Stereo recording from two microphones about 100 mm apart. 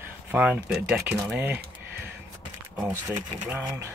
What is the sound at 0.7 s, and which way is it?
Speech, 5° right (ahead or behind).